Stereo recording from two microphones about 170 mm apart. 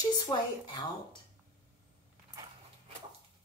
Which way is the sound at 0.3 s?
25° left (ahead or behind).